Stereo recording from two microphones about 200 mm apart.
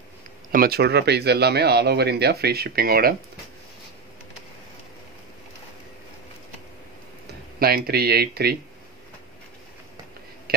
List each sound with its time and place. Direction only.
0.5 s speech: 50° right (ahead or behind)
7.5 s speech: 50° right (ahead or behind)